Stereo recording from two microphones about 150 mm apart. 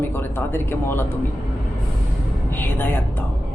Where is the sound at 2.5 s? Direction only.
15° left (ahead or behind).